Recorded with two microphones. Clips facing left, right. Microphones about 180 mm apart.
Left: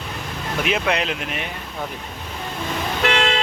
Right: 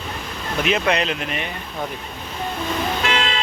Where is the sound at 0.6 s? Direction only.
5° left (ahead or behind).